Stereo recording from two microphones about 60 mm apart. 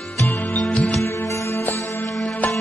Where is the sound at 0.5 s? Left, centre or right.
Centre.